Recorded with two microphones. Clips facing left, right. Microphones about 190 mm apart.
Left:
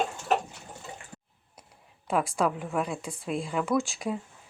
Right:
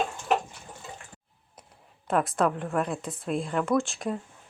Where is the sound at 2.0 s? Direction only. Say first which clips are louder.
Right 2 dB; centre (ahead or behind).